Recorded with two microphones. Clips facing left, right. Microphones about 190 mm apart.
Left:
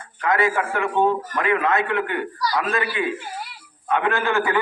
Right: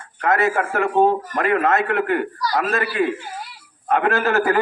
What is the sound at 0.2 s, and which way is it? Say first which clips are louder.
A man's voice: right 2 dB; 50° right (ahead or behind).